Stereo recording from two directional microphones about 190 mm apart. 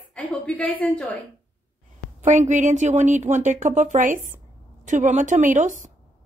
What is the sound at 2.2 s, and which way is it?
A woman's voice, 40° right (ahead or behind).